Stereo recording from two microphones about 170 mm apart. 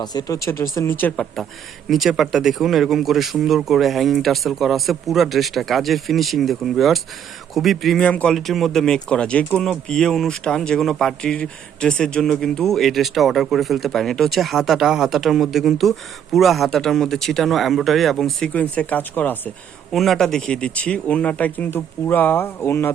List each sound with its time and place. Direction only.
0.0 s speech: 25° left (ahead or behind)